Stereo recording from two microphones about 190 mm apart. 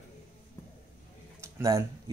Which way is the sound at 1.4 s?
15° right (ahead or behind).